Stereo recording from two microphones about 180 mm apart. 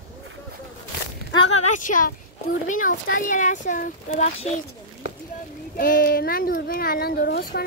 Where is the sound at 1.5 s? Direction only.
40° left (ahead or behind).